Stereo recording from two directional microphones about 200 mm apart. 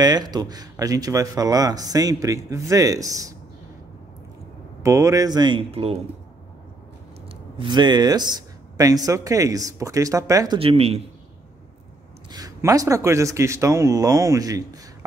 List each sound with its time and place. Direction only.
0.0 s speech: 20° right (ahead or behind)
4.8 s speech: 15° right (ahead or behind)
7.5 s speech: 25° right (ahead or behind)
10.6 s speech: 30° right (ahead or behind)
12.3 s speech: 20° right (ahead or behind)